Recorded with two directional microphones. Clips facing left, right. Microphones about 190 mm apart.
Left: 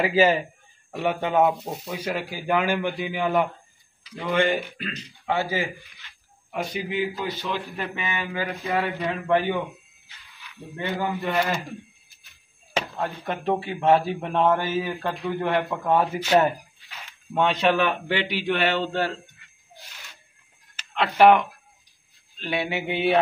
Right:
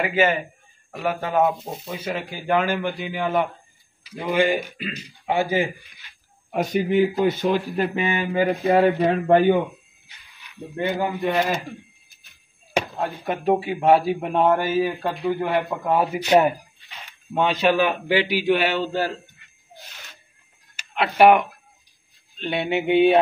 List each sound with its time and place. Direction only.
0.0 s a man's voice: 30° left (ahead or behind)
0.9 s speech: 20° left (ahead or behind)
2.1 s speech: 10° left (ahead or behind)
4.0 s speech: 10° right (ahead or behind)
6.5 s speech: 45° right (ahead or behind)
10.0 s a man's voice: 20° right (ahead or behind)
12.7 s speech: 15° right (ahead or behind)
20.7 s speech: 10° right (ahead or behind)
22.4 s speech: 25° right (ahead or behind)